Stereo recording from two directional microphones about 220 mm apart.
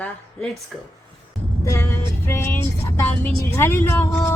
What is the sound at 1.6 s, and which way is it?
Vehicle, 15° left (ahead or behind).